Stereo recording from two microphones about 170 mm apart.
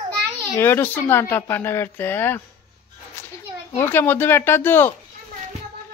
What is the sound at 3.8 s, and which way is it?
Speech, 15° left (ahead or behind).